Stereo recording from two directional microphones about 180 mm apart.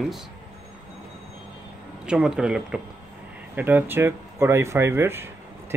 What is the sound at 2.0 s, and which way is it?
Speech, 5° right (ahead or behind).